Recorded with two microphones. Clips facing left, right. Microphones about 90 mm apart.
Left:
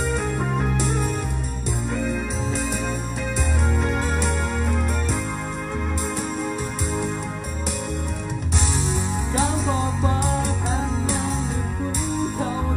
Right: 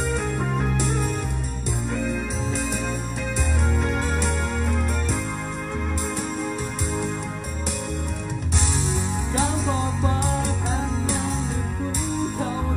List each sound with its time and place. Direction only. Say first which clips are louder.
0.0 s music: left 1 dB; 15° left (ahead or behind)
3.3 s music: left 1 dB; 15° left (ahead or behind)
9.3 s music: left 1 dB; 10° left (ahead or behind)
12.4 s music: left 1 dB; 20° left (ahead or behind)